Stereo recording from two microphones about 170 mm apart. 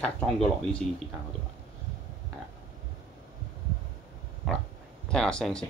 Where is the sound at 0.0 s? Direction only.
5° left (ahead or behind).